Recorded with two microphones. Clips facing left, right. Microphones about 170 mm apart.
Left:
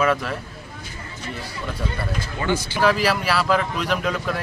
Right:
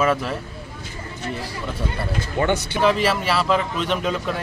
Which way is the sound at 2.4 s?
60° right (ahead or behind).